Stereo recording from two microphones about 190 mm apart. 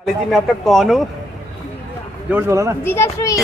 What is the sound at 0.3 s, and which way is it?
Speech, centre (ahead or behind).